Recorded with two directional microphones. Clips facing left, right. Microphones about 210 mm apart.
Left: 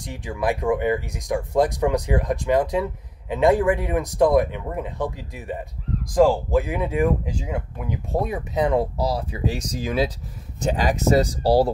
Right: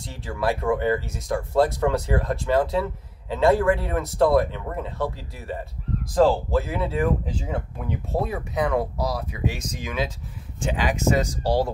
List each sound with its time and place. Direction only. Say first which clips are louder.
0.0 s speech: left 1 dB; 15° left (ahead or behind); by 11.7 s 35° left (ahead or behind)